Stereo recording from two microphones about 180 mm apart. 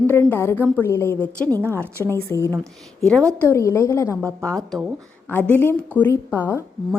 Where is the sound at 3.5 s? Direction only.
15° left (ahead or behind).